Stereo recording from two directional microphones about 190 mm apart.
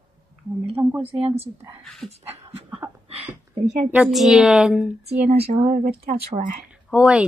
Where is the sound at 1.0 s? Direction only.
30° right (ahead or behind).